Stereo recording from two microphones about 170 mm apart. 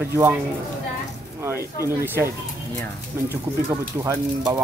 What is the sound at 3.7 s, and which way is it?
Speech, 20° right (ahead or behind).